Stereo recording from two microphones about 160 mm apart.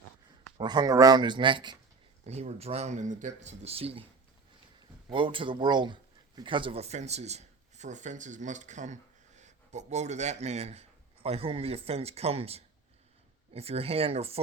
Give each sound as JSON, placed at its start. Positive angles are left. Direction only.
{"t": 0.6, "sound": "speech", "side_deg": -25}
{"t": 2.2, "sound": "speech", "side_deg": -40}
{"t": 5.0, "sound": "speech", "side_deg": -30}